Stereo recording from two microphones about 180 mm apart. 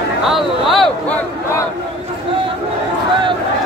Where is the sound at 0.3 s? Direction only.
Centre (ahead or behind).